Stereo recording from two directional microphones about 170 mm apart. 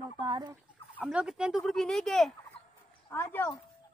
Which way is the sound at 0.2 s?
25° right (ahead or behind).